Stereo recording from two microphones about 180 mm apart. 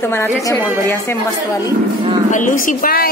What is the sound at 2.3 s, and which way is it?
Speech, 45° left (ahead or behind).